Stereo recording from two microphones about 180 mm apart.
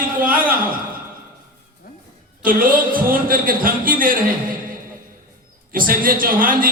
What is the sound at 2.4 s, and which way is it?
Speech, 50° right (ahead or behind).